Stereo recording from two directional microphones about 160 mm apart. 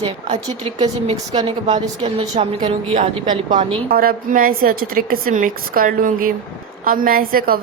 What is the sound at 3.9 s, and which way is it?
A woman's voice, 65° right (ahead or behind).